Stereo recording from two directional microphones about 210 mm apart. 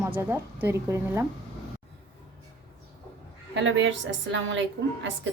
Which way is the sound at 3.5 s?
60° right (ahead or behind).